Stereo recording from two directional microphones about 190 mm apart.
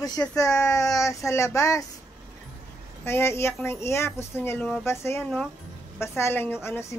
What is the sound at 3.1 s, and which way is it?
A woman's voice, 15° left (ahead or behind).